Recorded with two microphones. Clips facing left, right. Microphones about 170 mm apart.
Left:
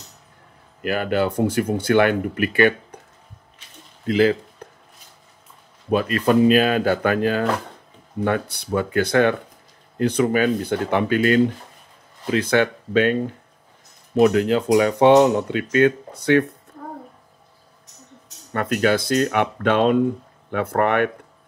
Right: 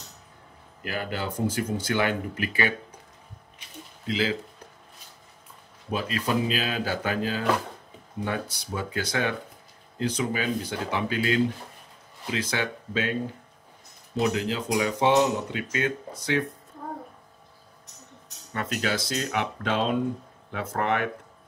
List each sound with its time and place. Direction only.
0.8 s speech: 65° left (ahead or behind)
4.0 s speech: 55° left (ahead or behind)
4.6 s chopping: 55° left (ahead or behind)
5.9 s speech: 60° left (ahead or behind)
18.5 s speech: 55° left (ahead or behind)